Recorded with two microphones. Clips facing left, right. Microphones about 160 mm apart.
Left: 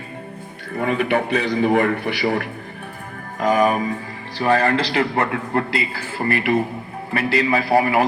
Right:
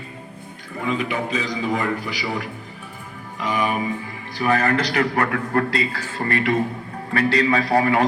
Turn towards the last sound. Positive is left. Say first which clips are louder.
# left 1 dB
turn(degrees=25)  # may be behind; listen again after turning